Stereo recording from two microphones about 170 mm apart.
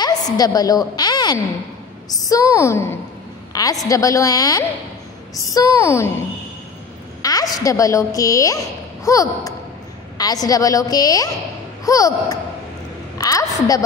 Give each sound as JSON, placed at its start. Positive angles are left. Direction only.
{"t": 0.0, "sound": "a woman's voice", "side_deg": 20}
{"t": 0.9, "sound": "a sound", "side_deg": 25}
{"t": 2.0, "sound": "a woman's voice", "side_deg": 20}